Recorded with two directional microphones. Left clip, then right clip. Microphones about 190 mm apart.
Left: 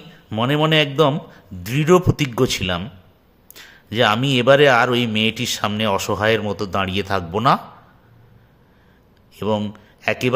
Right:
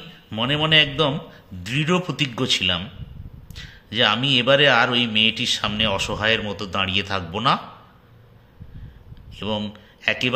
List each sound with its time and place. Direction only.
0.3 s a man's voice: 50° left (ahead or behind)
9.3 s speech: 50° left (ahead or behind)